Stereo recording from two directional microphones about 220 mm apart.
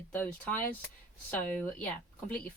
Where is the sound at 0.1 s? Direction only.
5° left (ahead or behind).